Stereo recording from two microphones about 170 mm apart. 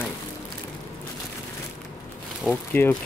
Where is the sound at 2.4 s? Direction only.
10° left (ahead or behind).